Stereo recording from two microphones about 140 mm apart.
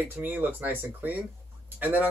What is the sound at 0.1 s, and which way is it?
Speech, 15° right (ahead or behind).